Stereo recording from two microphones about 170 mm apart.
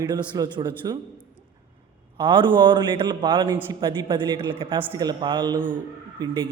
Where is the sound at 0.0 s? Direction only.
20° right (ahead or behind).